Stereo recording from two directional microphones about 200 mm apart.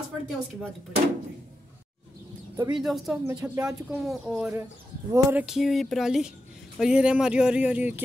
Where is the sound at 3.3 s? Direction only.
15° right (ahead or behind).